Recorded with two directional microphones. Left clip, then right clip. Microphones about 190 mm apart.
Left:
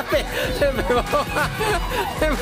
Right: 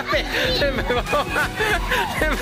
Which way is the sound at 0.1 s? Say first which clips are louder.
Right 2 dB; 5° left (ahead or behind).